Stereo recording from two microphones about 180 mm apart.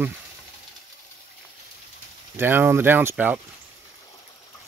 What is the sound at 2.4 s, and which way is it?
Speech, 10° right (ahead or behind).